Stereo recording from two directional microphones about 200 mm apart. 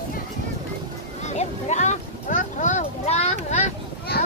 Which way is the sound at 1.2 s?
35° left (ahead or behind).